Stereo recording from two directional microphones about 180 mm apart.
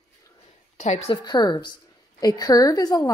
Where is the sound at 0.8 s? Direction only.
35° left (ahead or behind).